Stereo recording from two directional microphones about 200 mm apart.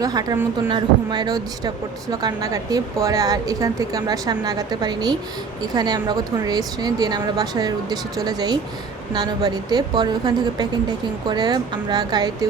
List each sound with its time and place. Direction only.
0.0 s a woman's voice: 20° right (ahead or behind)